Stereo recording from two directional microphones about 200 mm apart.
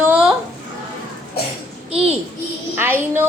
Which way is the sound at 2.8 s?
10° right (ahead or behind).